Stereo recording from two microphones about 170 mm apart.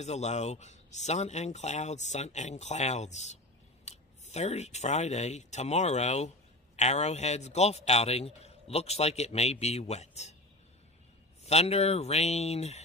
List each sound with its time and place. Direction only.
0.0 s a man's voice: 40° left (ahead or behind)
11.4 s a man's voice: 40° left (ahead or behind)